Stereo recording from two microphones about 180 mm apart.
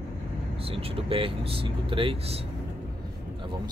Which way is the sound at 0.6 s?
30° right (ahead or behind).